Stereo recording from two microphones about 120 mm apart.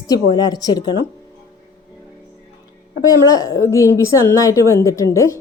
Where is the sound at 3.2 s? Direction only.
30° left (ahead or behind).